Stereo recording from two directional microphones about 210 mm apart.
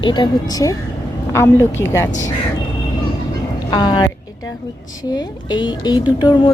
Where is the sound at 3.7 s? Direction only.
20° left (ahead or behind).